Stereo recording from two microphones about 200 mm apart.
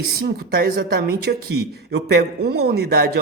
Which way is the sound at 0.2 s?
50° right (ahead or behind).